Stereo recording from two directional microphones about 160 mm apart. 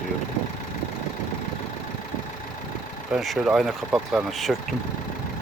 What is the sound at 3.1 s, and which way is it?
Speech, centre (ahead or behind).